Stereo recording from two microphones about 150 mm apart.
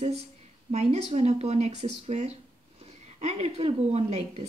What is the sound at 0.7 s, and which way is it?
A woman's voice, 45° right (ahead or behind).